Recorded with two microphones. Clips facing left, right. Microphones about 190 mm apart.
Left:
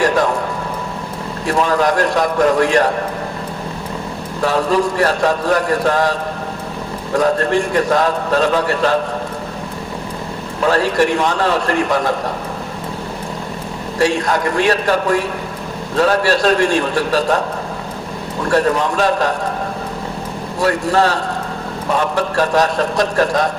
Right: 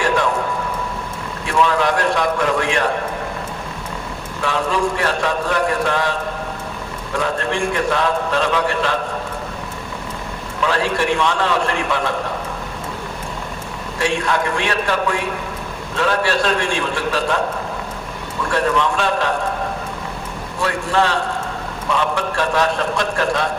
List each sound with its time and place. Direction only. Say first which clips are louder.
1.5 s a man's voice: left 2 dB; 40° left (ahead or behind)
4.4 s a man's voice: left 5 dB; 40° left (ahead or behind)
10.6 s a man's voice: left 5 dB; 40° left (ahead or behind)
14.0 s a man's voice: left 4 dB; 40° left (ahead or behind)
18.4 s a man's voice: left 3 dB; 40° left (ahead or behind)
20.6 s a man's voice: left 4 dB; 40° left (ahead or behind)